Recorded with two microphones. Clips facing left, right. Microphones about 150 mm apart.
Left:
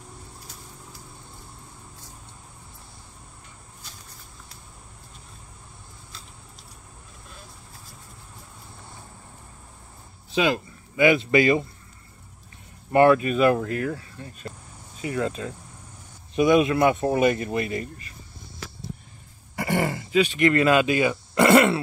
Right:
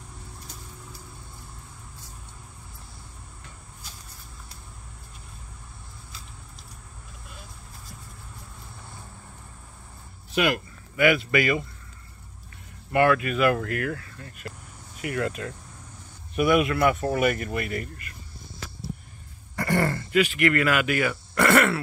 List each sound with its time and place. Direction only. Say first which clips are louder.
10.5 s speech: left 2 dB; 25° left (ahead or behind)
12.9 s speech: left 4 dB; 30° left (ahead or behind)
19.5 s throat clearing: even; 15° left (ahead or behind)
20.3 s speech: left 4 dB; 25° left (ahead or behind)